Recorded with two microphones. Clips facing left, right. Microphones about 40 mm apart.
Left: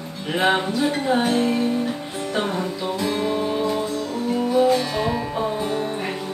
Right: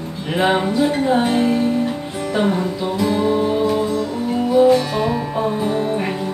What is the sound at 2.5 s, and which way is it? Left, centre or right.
Music, centre.